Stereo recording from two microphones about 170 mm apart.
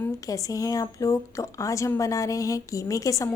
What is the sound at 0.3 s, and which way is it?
A woman's voice, 20° left (ahead or behind).